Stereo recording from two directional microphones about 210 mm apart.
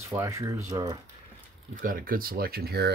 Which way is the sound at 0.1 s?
15° right (ahead or behind).